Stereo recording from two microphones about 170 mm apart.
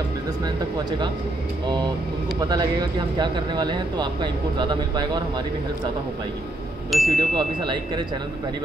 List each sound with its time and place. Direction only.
2.4 s speech: 25° right (ahead or behind)
6.9 s speech: centre (ahead or behind)
7.3 s speech: 25° right (ahead or behind)